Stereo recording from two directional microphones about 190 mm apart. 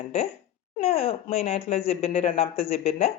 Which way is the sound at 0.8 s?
30° left (ahead or behind).